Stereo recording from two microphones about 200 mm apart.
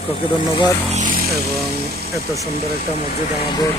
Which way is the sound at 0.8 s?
40° right (ahead or behind).